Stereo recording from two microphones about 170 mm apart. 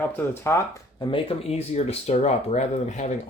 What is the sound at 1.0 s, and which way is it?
Speech, 30° left (ahead or behind).